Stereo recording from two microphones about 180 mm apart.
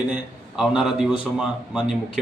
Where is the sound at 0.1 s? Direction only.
5° right (ahead or behind).